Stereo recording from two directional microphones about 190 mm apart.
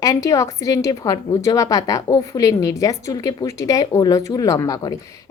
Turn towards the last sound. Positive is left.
turn(degrees=20)  # may be behind; listen again after turning